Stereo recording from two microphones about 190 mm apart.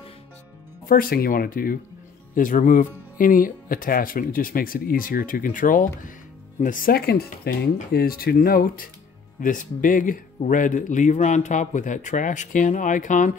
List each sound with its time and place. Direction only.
0.8 s speech: 50° left (ahead or behind)